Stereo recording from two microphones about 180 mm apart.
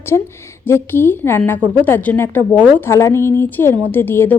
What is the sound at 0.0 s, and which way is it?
A woman's voice, 15° left (ahead or behind).